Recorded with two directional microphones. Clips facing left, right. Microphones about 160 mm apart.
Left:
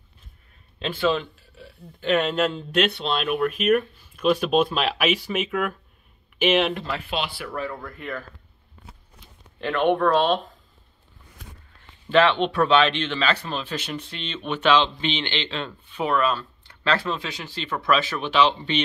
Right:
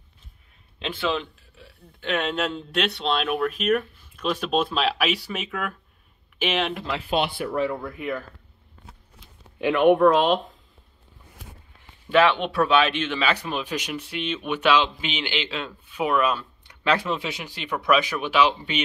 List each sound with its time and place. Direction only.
2.0 s speech: 5° left (ahead or behind)
6.7 s speech: 5° right (ahead or behind)
7.1 s speech: 50° right (ahead or behind)
7.3 s speech: 20° right (ahead or behind)
7.8 s speech: 5° right (ahead or behind)
9.6 s speech: 10° right (ahead or behind)
12.1 s speech: 10° right (ahead or behind)